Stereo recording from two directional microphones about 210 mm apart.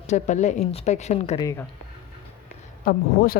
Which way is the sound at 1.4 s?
15° left (ahead or behind).